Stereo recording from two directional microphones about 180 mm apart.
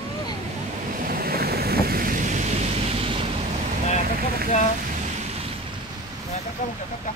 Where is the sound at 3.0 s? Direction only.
30° right (ahead or behind).